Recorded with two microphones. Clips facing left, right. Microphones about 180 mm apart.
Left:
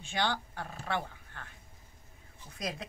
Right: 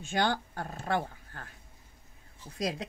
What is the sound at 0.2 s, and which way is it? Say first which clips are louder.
Speech: right 3 dB; 45° right (ahead or behind).